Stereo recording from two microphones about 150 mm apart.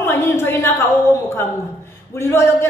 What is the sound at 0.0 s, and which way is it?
A woman's voice, 20° left (ahead or behind).